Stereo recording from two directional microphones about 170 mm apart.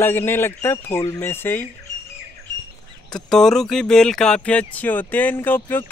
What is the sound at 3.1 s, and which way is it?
Speech, 5° left (ahead or behind).